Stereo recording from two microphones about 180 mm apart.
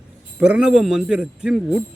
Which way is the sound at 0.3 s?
5° right (ahead or behind).